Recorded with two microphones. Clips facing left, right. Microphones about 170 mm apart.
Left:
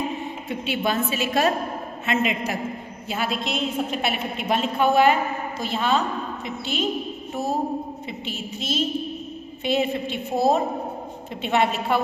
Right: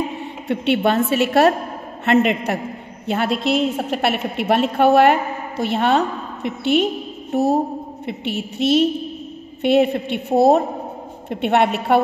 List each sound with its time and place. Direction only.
0.2 s a woman's voice: 65° right (ahead or behind)